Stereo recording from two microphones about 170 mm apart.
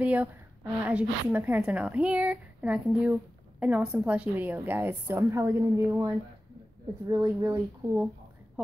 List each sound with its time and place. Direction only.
0.0 s a woman's voice: 10° right (ahead or behind)
7.1 s speech: 20° right (ahead or behind)